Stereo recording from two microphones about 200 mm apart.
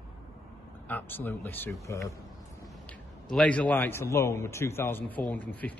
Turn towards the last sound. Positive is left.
turn(degrees=10)  # may be behind; listen again after turning